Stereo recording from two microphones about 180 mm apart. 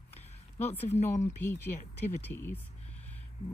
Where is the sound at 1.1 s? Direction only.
15° left (ahead or behind).